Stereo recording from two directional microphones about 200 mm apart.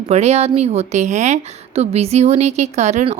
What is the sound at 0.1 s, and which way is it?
A woman's voice, 30° right (ahead or behind).